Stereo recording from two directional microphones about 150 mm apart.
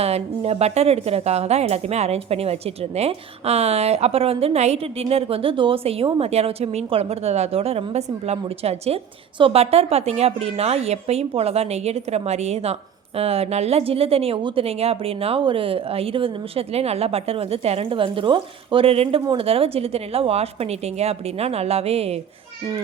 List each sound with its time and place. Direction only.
0.0 s a woman's voice: 45° right (ahead or behind)